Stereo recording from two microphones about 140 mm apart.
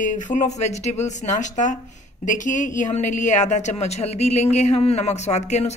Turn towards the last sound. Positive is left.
turn(degrees=55)  # may be behind; listen again after turning